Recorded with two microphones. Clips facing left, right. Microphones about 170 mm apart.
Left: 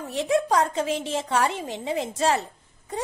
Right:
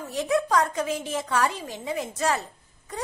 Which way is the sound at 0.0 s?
25° left (ahead or behind).